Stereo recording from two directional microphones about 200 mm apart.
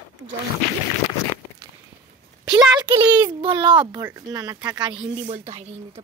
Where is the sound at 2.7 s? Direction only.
20° right (ahead or behind).